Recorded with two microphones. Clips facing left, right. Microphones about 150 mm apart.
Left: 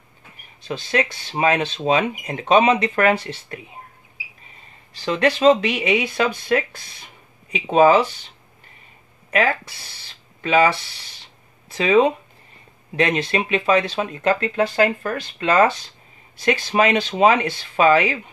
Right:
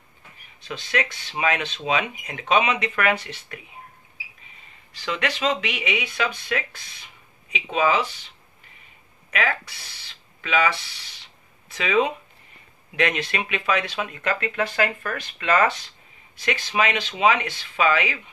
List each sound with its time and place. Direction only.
0.7 s speech: 35° left (ahead or behind)
4.9 s speech: 35° left (ahead or behind)
9.3 s speech: 35° left (ahead or behind)